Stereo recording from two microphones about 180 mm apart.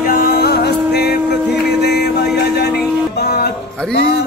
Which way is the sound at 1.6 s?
65° left (ahead or behind).